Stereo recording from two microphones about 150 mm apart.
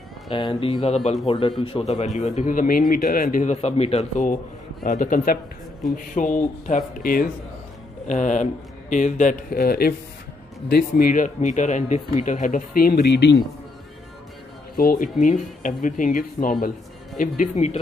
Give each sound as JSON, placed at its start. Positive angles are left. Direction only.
{"t": 0.3, "sound": "speech", "side_deg": 35}
{"t": 4.8, "sound": "speech", "side_deg": 60}
{"t": 6.9, "sound": "speech", "side_deg": 70}
{"t": 8.1, "sound": "speech", "side_deg": 55}
{"t": 14.8, "sound": "speech", "side_deg": 70}
{"t": 17.2, "sound": "speech", "side_deg": 55}